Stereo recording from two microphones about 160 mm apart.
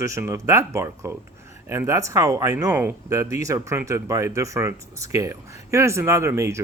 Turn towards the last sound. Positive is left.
turn(degrees=-20)  # may be behind; listen again after turning